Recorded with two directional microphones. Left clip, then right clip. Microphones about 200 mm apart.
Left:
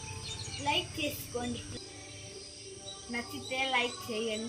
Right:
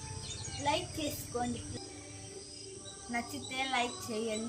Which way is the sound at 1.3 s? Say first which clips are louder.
Right 3 dB; 10° right (ahead or behind).